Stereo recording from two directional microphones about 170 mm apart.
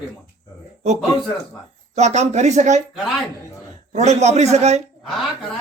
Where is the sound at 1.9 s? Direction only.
40° right (ahead or behind).